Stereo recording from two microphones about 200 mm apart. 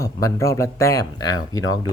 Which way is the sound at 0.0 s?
15° left (ahead or behind).